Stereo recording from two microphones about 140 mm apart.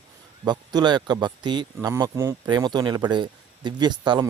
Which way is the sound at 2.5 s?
30° right (ahead or behind).